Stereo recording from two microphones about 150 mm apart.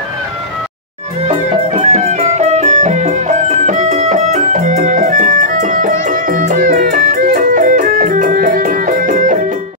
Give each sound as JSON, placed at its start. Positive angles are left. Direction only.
{"t": 1.2, "sound": "music", "side_deg": -45}